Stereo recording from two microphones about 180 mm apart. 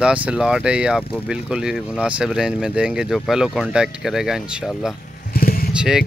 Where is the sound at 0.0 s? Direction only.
5° right (ahead or behind).